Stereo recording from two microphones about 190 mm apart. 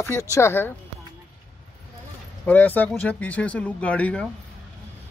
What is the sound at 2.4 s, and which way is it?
Speech, 10° left (ahead or behind).